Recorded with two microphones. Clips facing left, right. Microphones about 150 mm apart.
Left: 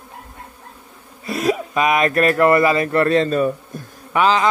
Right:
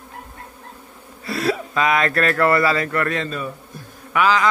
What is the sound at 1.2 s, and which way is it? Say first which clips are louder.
Speech: left 2 dB; 20° left (ahead or behind).